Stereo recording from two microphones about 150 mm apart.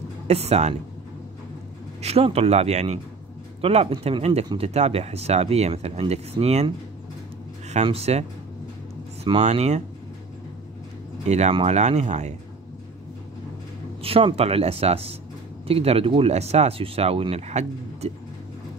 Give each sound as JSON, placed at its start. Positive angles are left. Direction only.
{"t": 0.3, "sound": "speech", "side_deg": -45}
{"t": 2.0, "sound": "speech", "side_deg": -45}
{"t": 7.7, "sound": "speech", "side_deg": -45}
{"t": 9.4, "sound": "speech", "side_deg": -50}
{"t": 11.2, "sound": "speech", "side_deg": -50}
{"t": 14.0, "sound": "speech", "side_deg": -40}